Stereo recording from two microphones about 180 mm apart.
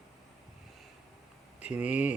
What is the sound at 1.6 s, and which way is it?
Speech, 5° right (ahead or behind).